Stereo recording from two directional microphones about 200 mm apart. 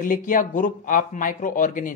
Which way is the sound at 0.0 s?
40° left (ahead or behind).